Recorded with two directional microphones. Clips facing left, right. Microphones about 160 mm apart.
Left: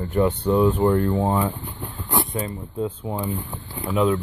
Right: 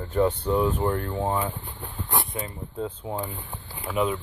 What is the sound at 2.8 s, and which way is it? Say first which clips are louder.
Speech: left 4 dB; 15° left (ahead or behind).